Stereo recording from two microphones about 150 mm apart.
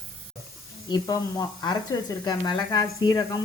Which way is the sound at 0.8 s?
25° left (ahead or behind).